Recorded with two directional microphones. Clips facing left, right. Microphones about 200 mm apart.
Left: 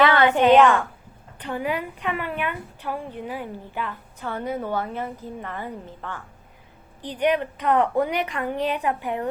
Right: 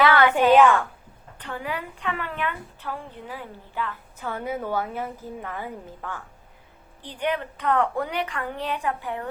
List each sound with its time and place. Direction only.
0.0 s a sound: 20° left (ahead or behind)
0.5 s a woman's voice: centre (ahead or behind)
1.4 s a woman's voice: 15° left (ahead or behind)
4.2 s a woman's voice: 5° right (ahead or behind)
7.0 s a woman's voice: 15° left (ahead or behind)